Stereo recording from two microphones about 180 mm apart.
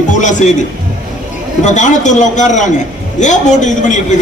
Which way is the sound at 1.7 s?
40° left (ahead or behind).